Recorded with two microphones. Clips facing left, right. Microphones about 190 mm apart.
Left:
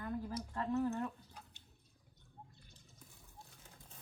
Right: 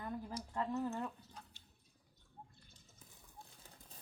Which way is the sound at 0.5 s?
20° right (ahead or behind).